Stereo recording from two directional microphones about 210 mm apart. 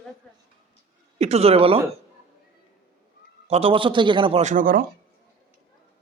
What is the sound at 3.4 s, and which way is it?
A man's voice, 30° right (ahead or behind).